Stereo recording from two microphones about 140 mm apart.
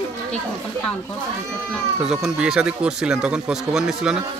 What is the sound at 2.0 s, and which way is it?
Speech, 5° right (ahead or behind).